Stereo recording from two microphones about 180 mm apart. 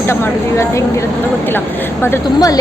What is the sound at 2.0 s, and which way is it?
Speech, 15° left (ahead or behind).